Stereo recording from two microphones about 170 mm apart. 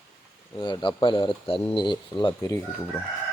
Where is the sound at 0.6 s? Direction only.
30° left (ahead or behind).